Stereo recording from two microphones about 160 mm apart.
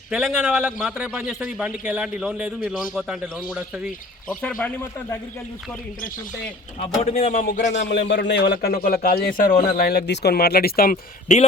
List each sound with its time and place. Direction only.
0.1 s a man's voice: 5° right (ahead or behind)
6.7 s speech: 40° left (ahead or behind)
7.3 s speech: 55° left (ahead or behind)
7.8 s a man's voice: 90° left; by 11.0 s 65° left (ahead or behind)